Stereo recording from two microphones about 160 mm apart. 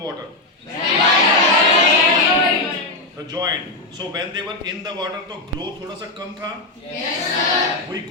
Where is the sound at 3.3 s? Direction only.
25° right (ahead or behind).